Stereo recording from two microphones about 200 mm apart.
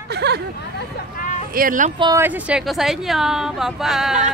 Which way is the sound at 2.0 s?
20° right (ahead or behind).